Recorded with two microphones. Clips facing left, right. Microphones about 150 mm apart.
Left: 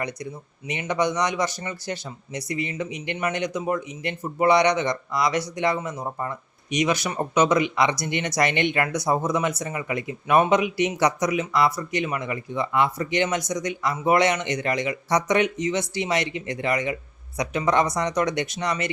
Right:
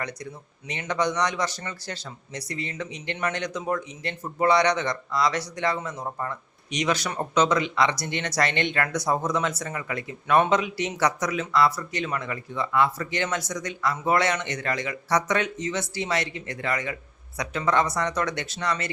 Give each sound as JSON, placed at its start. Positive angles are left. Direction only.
{"t": 0.7, "sound": "speech", "side_deg": 15}